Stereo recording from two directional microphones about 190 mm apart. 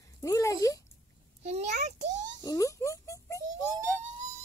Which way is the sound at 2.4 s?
15° left (ahead or behind).